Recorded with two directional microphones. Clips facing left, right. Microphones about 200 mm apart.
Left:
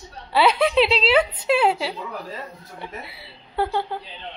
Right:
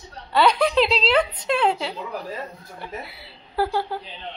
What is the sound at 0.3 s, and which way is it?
Speech, 5° left (ahead or behind).